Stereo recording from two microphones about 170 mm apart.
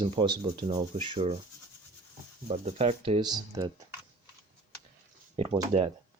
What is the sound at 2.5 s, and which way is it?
Speech, 35° right (ahead or behind).